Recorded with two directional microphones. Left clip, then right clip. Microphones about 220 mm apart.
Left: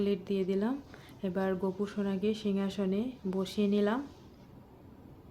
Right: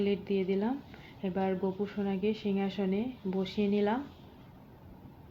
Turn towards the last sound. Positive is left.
turn(degrees=15)  # may be behind; listen again after turning